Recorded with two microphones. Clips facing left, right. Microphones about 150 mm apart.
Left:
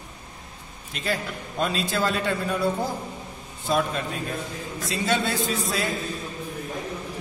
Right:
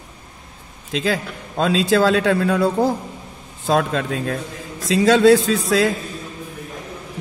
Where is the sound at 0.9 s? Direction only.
90° right.